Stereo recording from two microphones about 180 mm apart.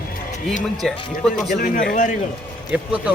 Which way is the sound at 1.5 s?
50° left (ahead or behind).